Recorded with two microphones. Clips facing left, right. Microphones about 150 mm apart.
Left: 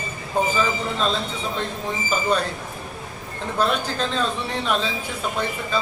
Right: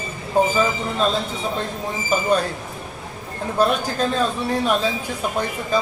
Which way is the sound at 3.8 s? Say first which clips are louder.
Right 3 dB; 10° right (ahead or behind).